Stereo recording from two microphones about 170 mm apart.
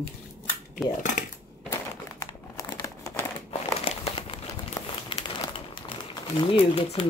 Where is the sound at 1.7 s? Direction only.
20° left (ahead or behind).